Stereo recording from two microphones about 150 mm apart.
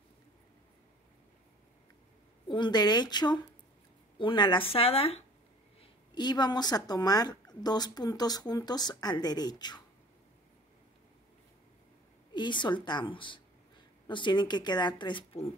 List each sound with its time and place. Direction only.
2.4 s speech: 30° left (ahead or behind)
5.8 s speech: 30° left (ahead or behind)
12.4 s speech: 30° left (ahead or behind)